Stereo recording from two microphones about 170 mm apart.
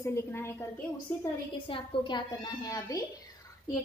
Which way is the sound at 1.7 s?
25° left (ahead or behind).